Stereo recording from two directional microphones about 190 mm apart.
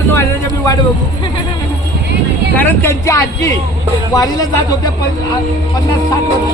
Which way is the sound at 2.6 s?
10° left (ahead or behind).